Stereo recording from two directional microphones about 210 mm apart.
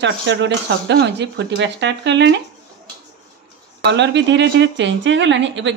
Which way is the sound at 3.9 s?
55° right (ahead or behind).